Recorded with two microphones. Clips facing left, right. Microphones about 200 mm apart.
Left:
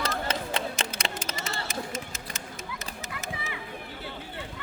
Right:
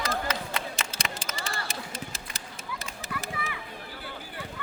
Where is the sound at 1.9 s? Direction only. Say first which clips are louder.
Left 3 dB; 35° right (ahead or behind).